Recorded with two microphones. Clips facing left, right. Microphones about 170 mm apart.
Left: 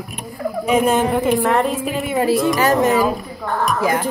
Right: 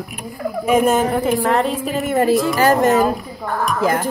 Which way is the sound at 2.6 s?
50° right (ahead or behind).